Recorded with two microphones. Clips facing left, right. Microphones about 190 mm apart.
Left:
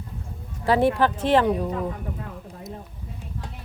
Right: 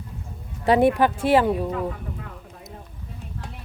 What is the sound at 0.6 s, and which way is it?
Speech, 20° right (ahead or behind).